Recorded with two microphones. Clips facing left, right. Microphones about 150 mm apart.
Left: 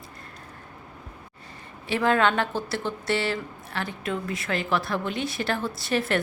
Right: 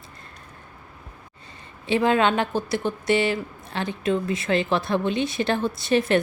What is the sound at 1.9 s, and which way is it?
A woman's voice, 20° right (ahead or behind).